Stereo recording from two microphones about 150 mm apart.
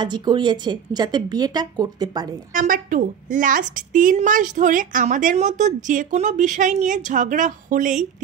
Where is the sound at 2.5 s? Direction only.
65° right (ahead or behind).